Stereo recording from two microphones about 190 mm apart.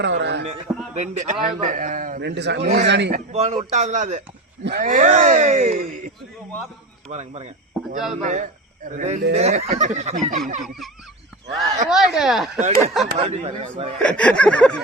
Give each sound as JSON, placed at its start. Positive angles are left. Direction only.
{"t": 0.0, "sound": "a sound", "side_deg": -65}
{"t": 0.9, "sound": "a man's voice", "side_deg": -40}
{"t": 2.2, "sound": "a man's voice", "side_deg": -65}
{"t": 2.6, "sound": "speech", "side_deg": -35}
{"t": 2.8, "sound": "a man's voice", "side_deg": -65}
{"t": 3.1, "sound": "speech", "side_deg": -35}
{"t": 7.1, "sound": "speech", "side_deg": -35}
{"t": 7.7, "sound": "cricket", "side_deg": 0}
{"t": 8.2, "sound": "speech", "side_deg": -40}
{"t": 11.9, "sound": "a sound", "side_deg": 0}
{"t": 12.5, "sound": "speech", "side_deg": -40}
{"t": 14.0, "sound": "a sound", "side_deg": 5}